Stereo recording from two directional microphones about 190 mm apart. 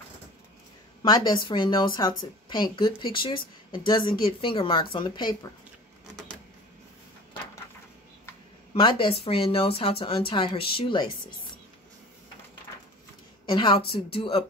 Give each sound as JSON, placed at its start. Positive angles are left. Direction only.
{"t": 1.0, "sound": "speech", "side_deg": 20}
{"t": 8.7, "sound": "speech", "side_deg": 25}
{"t": 13.5, "sound": "speech", "side_deg": 25}